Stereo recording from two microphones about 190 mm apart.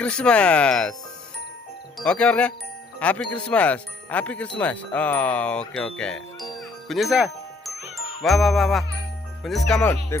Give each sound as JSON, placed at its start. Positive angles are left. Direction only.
{"t": 0.0, "sound": "speech", "side_deg": 5}
{"t": 2.0, "sound": "speech", "side_deg": 5}